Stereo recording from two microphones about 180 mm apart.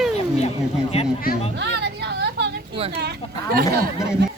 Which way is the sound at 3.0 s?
60° right (ahead or behind).